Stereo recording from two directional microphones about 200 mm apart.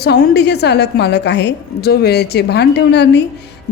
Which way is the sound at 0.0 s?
55° left (ahead or behind).